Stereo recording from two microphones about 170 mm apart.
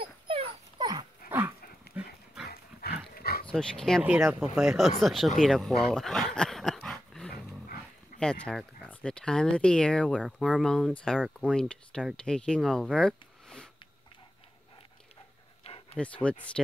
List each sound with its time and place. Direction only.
0.0 s dog: 30° right (ahead or behind)
1.9 s dog: 70° left (ahead or behind)
3.2 s dog: 60° left (ahead or behind)
3.4 s speech: 5° left (ahead or behind)
4.0 s speech: 10° right (ahead or behind)
5.9 s dog: 5° left (ahead or behind)
8.2 s speech: 5° left (ahead or behind)
15.6 s a sound: 35° left (ahead or behind)
16.0 s speech: 5° left (ahead or behind)